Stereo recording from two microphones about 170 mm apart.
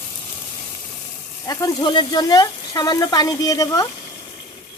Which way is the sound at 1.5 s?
20° left (ahead or behind).